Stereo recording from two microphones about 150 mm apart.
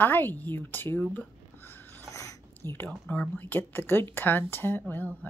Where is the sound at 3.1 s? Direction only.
10° left (ahead or behind).